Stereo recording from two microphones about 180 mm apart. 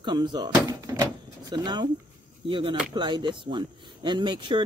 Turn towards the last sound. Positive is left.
turn(degrees=-25)  # may be behind; listen again after turning